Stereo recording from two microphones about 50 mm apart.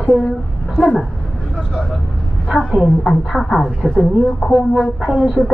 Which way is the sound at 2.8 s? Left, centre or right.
Centre.